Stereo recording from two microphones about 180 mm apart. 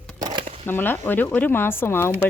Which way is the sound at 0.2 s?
25° right (ahead or behind).